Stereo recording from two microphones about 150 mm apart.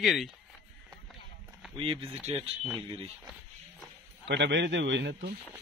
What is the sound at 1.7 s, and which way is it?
Speech, 35° right (ahead or behind).